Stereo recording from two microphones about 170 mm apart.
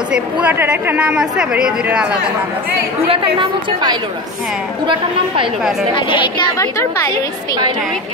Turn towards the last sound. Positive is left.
turn(degrees=20)  # may be behind; listen again after turning